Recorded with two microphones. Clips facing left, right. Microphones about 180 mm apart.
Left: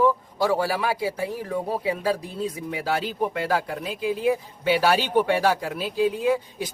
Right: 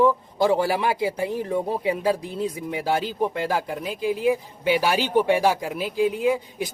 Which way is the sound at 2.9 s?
15° right (ahead or behind).